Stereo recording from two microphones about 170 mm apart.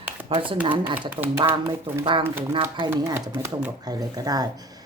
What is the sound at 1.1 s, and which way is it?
Speech, 10° right (ahead or behind).